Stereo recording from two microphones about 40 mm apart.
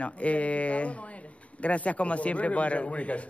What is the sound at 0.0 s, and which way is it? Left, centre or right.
Speech, left.